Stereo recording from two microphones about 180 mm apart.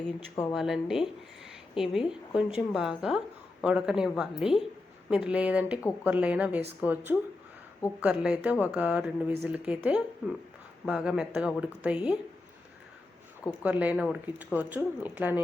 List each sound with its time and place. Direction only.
0.5 s a woman's voice: centre (ahead or behind)
13.6 s speech: 5° right (ahead or behind)